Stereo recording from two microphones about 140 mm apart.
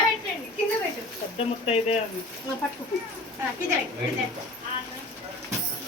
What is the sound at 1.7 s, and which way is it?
Speech, 50° left (ahead or behind).